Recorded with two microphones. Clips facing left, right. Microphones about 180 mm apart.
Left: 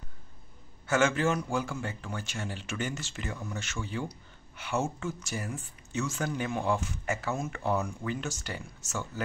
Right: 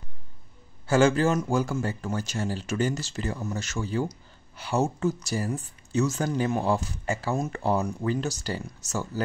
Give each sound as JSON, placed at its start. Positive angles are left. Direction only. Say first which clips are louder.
{"t": 0.8, "sound": "speech", "louder": "right 5 dB", "side_deg": -35}